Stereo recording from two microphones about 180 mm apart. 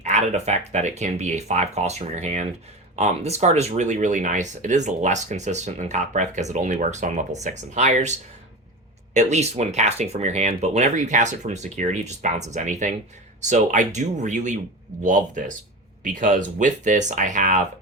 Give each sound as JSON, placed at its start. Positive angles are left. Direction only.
{"t": 0.0, "sound": "speech", "side_deg": -40}
{"t": 9.1, "sound": "speech", "side_deg": -40}